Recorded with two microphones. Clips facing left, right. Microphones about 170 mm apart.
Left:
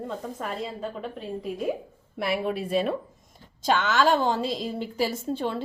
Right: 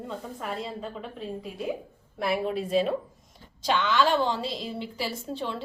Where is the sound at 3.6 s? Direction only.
45° left (ahead or behind).